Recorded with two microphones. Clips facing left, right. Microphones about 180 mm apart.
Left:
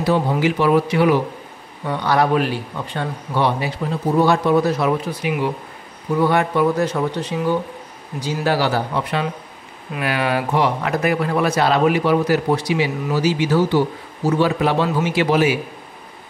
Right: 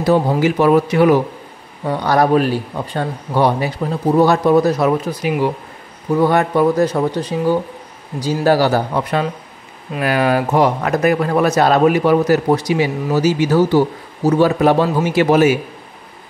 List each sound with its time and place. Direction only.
0.0 s a man's voice: 40° right (ahead or behind)